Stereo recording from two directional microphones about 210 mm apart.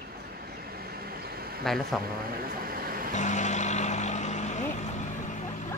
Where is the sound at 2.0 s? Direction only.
45° right (ahead or behind).